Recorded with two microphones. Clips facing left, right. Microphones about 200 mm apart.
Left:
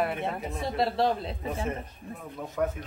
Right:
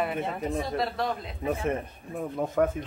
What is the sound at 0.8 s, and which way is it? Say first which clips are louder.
Speech: left 3 dB; 30° left (ahead or behind).